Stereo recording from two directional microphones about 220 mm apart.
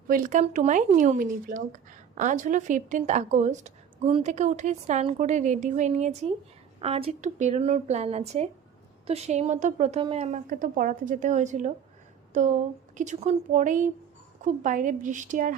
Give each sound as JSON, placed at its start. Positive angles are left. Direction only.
{"t": 0.1, "sound": "a woman's voice", "side_deg": -35}